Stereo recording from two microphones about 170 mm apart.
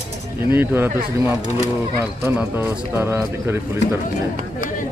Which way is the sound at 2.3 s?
15° right (ahead or behind).